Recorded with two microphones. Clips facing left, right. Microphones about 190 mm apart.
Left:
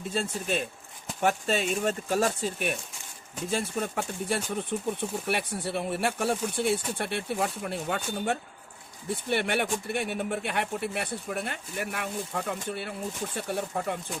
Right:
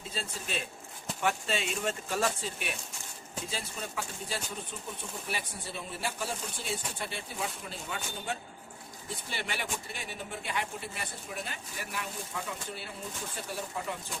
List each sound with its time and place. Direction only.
0.1 s speech: 50° left (ahead or behind)